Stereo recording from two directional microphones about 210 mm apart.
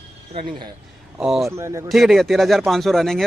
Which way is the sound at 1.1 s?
Centre (ahead or behind).